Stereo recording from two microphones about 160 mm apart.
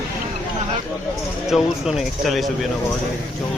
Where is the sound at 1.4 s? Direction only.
Centre (ahead or behind).